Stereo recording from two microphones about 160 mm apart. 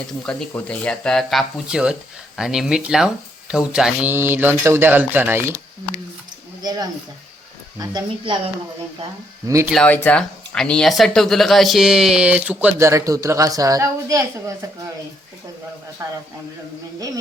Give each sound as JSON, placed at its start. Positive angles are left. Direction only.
{"t": 0.3, "sound": "speech", "side_deg": 5}
{"t": 6.6, "sound": "speech", "side_deg": -25}
{"t": 9.6, "sound": "speech", "side_deg": 5}
{"t": 16.0, "sound": "speech", "side_deg": -20}